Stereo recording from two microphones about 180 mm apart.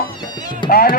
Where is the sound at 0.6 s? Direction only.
55° left (ahead or behind).